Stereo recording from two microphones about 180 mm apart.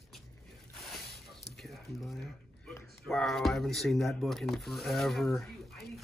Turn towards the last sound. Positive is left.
turn(degrees=0)  # may be behind; listen again after turning